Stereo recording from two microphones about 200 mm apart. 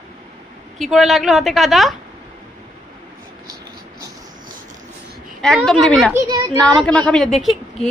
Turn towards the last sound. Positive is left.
turn(degrees=0)  # may be behind; listen again after turning